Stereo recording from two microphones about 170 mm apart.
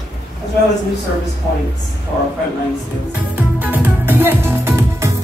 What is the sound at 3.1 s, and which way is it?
Music, 10° right (ahead or behind).